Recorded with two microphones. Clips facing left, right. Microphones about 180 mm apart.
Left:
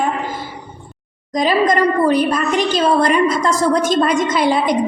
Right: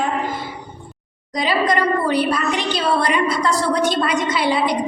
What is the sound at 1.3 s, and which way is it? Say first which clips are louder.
A woman's voice: left 4 dB; 45° left (ahead or behind).